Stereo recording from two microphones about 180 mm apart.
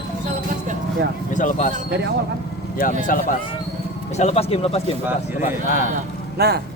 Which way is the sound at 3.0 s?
50° left (ahead or behind).